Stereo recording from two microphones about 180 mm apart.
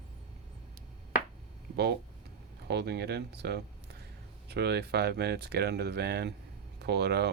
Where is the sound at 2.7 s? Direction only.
70° right (ahead or behind).